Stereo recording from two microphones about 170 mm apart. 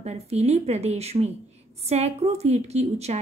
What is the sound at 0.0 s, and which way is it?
A woman's voice, 40° right (ahead or behind).